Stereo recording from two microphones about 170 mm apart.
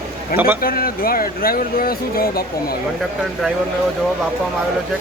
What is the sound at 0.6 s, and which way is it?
Speech, 60° left (ahead or behind).